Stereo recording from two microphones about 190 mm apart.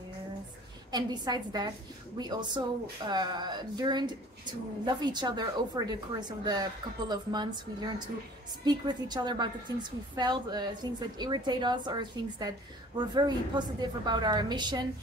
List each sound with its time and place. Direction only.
0.9 s a woman's voice: 20° right (ahead or behind)